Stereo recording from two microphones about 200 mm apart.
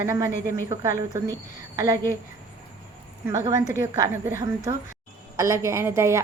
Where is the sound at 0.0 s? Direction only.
15° right (ahead or behind).